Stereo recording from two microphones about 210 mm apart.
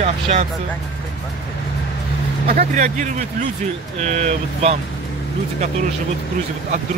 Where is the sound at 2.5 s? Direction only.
35° right (ahead or behind).